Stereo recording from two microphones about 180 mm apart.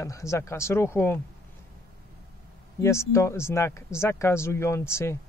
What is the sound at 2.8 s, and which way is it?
Speech, 15° left (ahead or behind).